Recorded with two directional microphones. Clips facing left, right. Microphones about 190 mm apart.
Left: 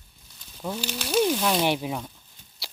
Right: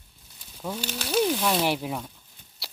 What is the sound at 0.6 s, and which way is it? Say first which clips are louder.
Speech: left 1 dB; centre (ahead or behind).